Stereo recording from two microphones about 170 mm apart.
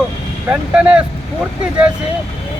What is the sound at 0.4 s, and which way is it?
Speech, 10° right (ahead or behind).